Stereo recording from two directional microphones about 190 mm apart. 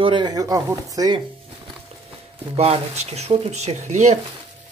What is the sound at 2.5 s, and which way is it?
Speech, 35° right (ahead or behind).